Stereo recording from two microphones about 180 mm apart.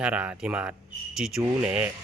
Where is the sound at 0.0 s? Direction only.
5° right (ahead or behind).